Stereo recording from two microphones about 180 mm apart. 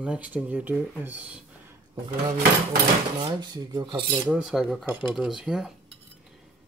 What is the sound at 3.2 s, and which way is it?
Filing, 25° right (ahead or behind).